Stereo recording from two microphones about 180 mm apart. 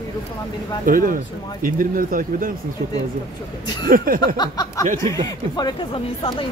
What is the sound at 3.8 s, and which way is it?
Speech, 55° right (ahead or behind).